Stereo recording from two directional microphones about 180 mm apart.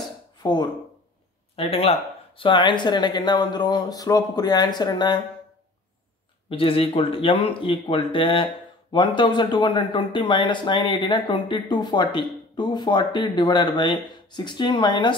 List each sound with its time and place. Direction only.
0.4 s speech: 25° left (ahead or behind)
6.5 s speech: 30° left (ahead or behind)